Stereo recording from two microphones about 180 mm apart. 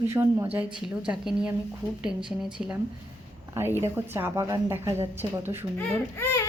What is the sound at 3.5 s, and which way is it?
A woman's voice, 15° right (ahead or behind).